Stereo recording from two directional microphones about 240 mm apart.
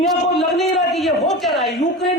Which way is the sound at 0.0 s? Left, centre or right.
Centre.